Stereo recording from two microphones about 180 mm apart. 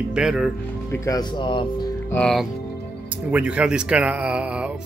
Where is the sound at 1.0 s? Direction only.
25° left (ahead or behind).